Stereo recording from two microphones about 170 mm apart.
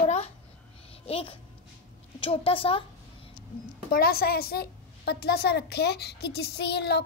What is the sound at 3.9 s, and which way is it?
A woman's voice, 65° left (ahead or behind).